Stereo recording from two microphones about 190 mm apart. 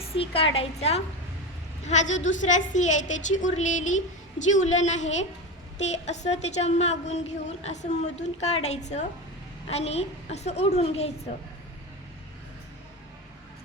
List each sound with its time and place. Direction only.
0.0 s a woman's voice: 30° left (ahead or behind)